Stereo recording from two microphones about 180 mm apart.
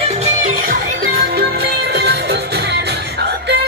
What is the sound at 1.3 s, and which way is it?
Music, 65° right (ahead or behind).